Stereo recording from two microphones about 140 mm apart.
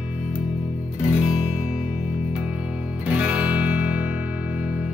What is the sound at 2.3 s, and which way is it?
Music, 10° right (ahead or behind).